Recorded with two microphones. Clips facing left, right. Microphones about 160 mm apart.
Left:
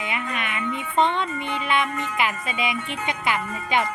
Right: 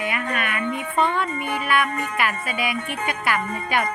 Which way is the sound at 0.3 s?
20° left (ahead or behind).